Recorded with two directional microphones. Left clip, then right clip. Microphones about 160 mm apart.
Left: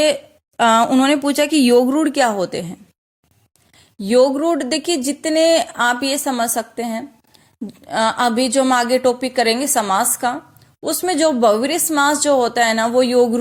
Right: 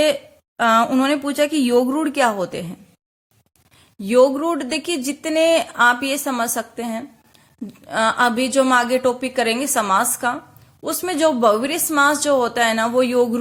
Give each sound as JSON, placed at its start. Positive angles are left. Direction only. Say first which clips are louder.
{"t": 0.0, "sound": "speech", "louder": "left 1 dB", "side_deg": 35}
{"t": 4.0, "sound": "speech", "louder": "left 1 dB", "side_deg": 20}